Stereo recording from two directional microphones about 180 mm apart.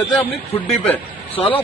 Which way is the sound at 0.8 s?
10° left (ahead or behind).